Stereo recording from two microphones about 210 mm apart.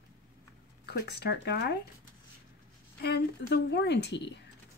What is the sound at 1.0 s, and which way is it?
Speech, 55° left (ahead or behind).